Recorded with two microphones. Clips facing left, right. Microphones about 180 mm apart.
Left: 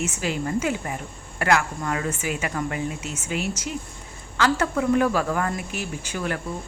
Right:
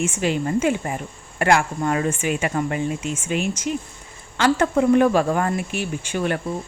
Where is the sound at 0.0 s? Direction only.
25° right (ahead or behind).